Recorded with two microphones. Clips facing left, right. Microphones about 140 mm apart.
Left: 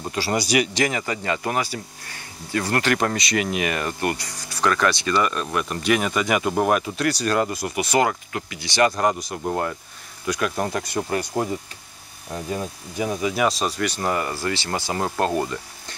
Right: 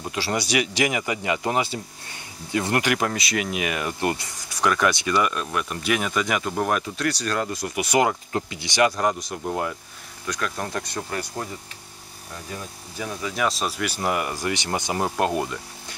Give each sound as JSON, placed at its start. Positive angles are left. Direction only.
{"t": 0.0, "sound": "speech", "side_deg": 5}
{"t": 0.8, "sound": "speech", "side_deg": -15}
{"t": 4.0, "sound": "speech", "side_deg": -20}
{"t": 7.7, "sound": "speech", "side_deg": -15}
{"t": 8.3, "sound": "speech", "side_deg": -25}
{"t": 8.9, "sound": "speech", "side_deg": 0}
{"t": 10.2, "sound": "speech", "side_deg": 10}
{"t": 11.1, "sound": "speech", "side_deg": 25}
{"t": 12.9, "sound": "speech", "side_deg": 15}
{"t": 13.4, "sound": "speech", "side_deg": 0}